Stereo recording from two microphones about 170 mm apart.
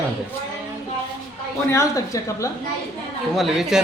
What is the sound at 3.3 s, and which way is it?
Speech, centre (ahead or behind).